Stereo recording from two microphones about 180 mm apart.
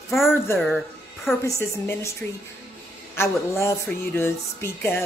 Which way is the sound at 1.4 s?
15° left (ahead or behind).